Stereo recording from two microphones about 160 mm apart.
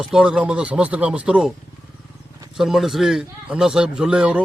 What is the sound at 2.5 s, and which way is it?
Speech, centre (ahead or behind).